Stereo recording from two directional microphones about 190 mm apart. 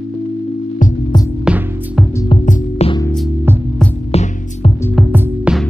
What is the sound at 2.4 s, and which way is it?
Music, 40° left (ahead or behind).